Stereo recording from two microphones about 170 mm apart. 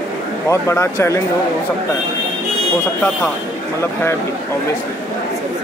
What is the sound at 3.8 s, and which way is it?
Speech, 15° left (ahead or behind).